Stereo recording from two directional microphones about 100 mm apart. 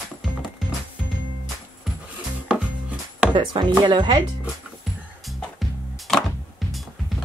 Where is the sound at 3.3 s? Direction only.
50° right (ahead or behind).